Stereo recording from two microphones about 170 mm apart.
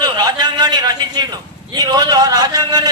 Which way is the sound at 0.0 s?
25° right (ahead or behind).